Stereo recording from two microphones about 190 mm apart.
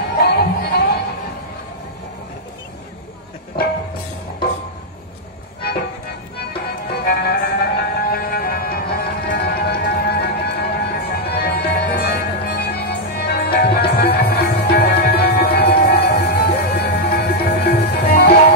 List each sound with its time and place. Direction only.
0.2 s music: 60° left (ahead or behind)
6.5 s music: 55° left (ahead or behind)